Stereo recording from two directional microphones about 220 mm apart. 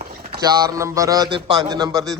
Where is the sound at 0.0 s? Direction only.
45° right (ahead or behind).